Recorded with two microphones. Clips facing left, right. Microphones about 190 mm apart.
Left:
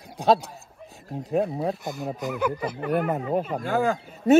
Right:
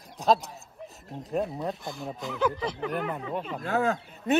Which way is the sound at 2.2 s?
5° left (ahead or behind).